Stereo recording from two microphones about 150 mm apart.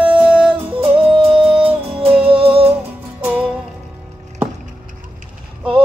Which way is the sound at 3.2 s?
5° right (ahead or behind).